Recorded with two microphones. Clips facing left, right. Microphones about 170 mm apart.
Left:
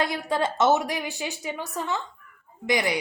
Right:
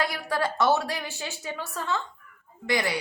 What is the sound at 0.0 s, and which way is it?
A woman's voice, 20° left (ahead or behind).